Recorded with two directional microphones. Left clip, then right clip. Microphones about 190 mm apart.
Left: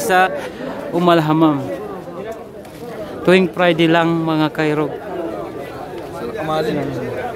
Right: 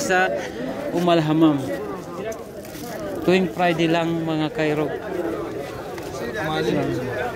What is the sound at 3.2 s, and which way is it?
A man's voice, 30° left (ahead or behind).